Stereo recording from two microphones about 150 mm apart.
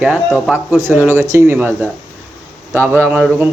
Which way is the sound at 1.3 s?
15° right (ahead or behind).